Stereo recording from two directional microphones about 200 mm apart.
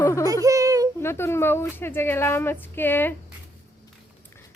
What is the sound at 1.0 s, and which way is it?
A woman's voice, 10° left (ahead or behind).